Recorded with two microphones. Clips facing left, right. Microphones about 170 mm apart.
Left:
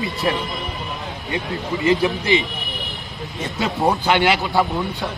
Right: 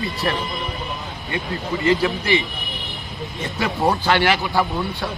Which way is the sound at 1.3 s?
20° left (ahead or behind).